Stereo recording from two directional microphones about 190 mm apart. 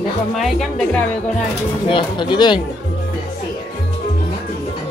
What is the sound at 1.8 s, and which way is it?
Speech, 25° left (ahead or behind).